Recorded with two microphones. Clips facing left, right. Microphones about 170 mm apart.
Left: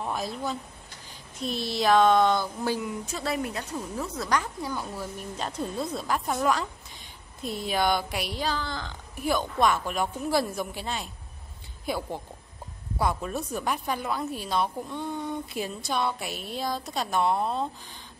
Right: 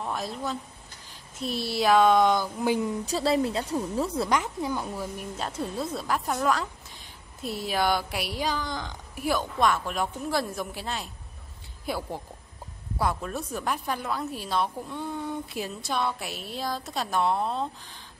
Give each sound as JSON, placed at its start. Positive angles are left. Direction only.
{"t": 0.0, "sound": "speech", "side_deg": 0}
{"t": 2.8, "sound": "a woman's voice", "side_deg": -35}
{"t": 4.8, "sound": "speech", "side_deg": -5}